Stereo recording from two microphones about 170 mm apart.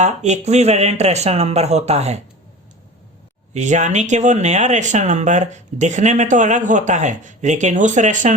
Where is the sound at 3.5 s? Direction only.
45° right (ahead or behind).